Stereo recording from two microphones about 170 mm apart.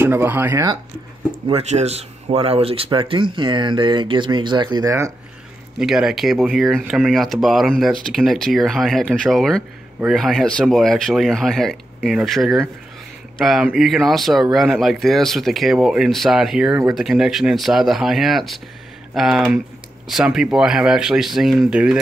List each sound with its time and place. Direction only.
0.0 s speech: 15° right (ahead or behind)
1.5 s speech: 40° right (ahead or behind); by 5.1 s 20° right (ahead or behind)
5.8 s speech: 5° right (ahead or behind)